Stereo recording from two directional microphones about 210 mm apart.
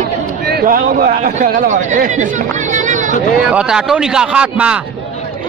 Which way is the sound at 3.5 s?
5° right (ahead or behind).